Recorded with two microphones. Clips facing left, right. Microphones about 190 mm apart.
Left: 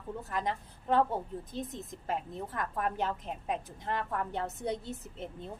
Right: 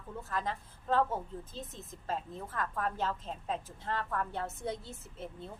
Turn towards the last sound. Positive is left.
turn(degrees=20)  # may be behind; listen again after turning